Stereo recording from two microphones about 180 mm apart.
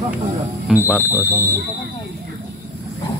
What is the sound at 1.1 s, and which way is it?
Speech, 15° left (ahead or behind).